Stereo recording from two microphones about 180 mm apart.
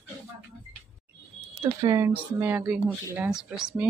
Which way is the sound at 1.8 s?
15° right (ahead or behind).